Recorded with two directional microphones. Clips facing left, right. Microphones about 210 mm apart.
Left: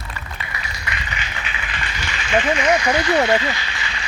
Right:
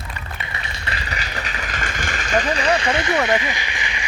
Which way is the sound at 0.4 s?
30° right (ahead or behind).